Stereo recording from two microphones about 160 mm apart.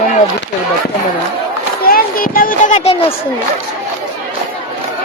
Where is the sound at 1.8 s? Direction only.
65° left (ahead or behind); by 3.1 s 40° left (ahead or behind).